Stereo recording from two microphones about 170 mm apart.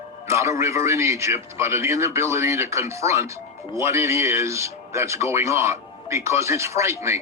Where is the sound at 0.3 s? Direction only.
15° right (ahead or behind).